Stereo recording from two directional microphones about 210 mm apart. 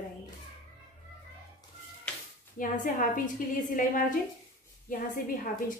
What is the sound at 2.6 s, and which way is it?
A woman's voice, 40° left (ahead or behind).